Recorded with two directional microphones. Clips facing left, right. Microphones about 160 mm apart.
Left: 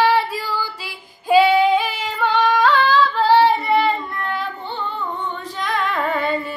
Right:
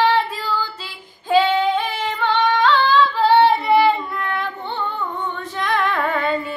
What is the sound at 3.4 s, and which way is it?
Child singing, centre (ahead or behind).